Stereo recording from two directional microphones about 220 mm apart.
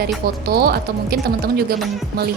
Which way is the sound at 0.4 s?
45° right (ahead or behind).